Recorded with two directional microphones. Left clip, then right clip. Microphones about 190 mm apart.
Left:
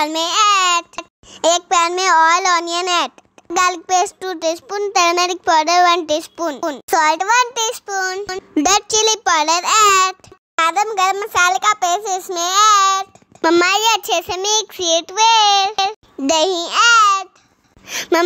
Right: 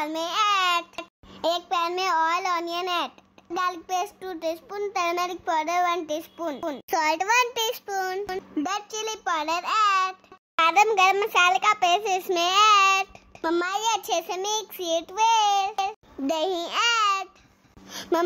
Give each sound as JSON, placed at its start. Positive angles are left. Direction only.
{"t": 0.0, "sound": "babbling", "side_deg": 30}
{"t": 1.4, "sound": "a child's voice", "side_deg": 30}
{"t": 8.5, "sound": "a child's voice", "side_deg": 35}
{"t": 13.4, "sound": "a child's voice", "side_deg": 30}
{"t": 16.2, "sound": "a child's voice", "side_deg": 25}